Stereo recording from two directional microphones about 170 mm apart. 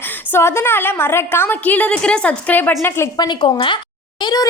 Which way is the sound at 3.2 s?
30° left (ahead or behind).